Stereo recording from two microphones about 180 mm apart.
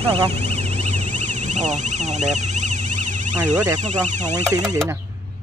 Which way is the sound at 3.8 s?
40° right (ahead or behind).